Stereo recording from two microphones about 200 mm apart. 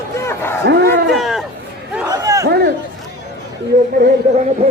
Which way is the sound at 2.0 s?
15° right (ahead or behind).